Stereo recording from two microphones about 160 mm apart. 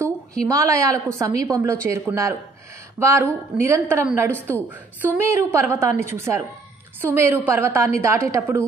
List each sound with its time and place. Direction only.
0.5 s a woman's voice: 20° right (ahead or behind)
4.4 s a woman's voice: 10° left (ahead or behind)
5.0 s a woman's voice: 15° right (ahead or behind)